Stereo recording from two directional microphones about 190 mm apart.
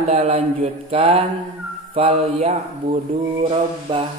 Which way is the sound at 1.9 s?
30° right (ahead or behind).